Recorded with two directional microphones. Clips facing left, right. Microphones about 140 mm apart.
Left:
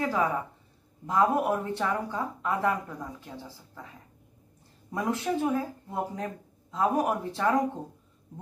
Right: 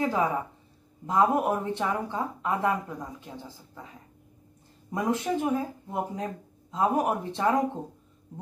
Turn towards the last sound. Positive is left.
turn(degrees=-20)  # may be behind; listen again after turning